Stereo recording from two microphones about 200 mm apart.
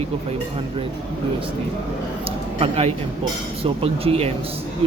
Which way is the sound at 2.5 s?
30° right (ahead or behind).